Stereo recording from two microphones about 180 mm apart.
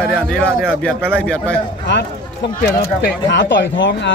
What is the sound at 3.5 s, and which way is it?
Speech, 85° left.